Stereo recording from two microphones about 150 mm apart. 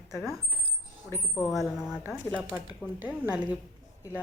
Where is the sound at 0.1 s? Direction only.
5° right (ahead or behind).